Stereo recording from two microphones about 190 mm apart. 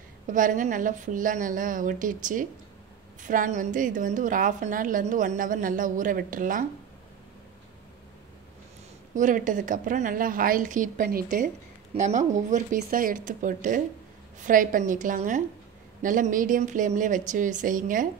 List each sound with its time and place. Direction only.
0.3 s a woman's voice: 45° right (ahead or behind)
9.1 s a woman's voice: 40° right (ahead or behind)